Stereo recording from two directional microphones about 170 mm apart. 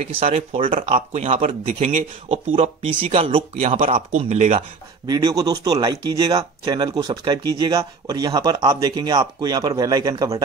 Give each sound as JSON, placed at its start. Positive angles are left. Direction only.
{"t": 0.0, "sound": "speech", "side_deg": -40}
{"t": 5.0, "sound": "speech", "side_deg": -25}